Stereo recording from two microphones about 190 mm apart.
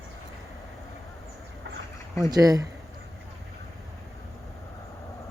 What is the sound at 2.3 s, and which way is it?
Speech, 20° right (ahead or behind).